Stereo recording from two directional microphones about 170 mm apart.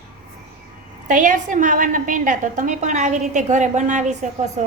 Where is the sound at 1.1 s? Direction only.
50° right (ahead or behind).